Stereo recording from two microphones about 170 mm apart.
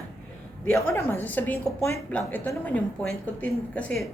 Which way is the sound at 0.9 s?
15° left (ahead or behind).